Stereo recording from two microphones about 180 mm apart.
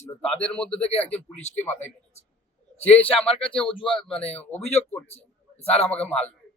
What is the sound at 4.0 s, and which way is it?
Speech, 5° left (ahead or behind).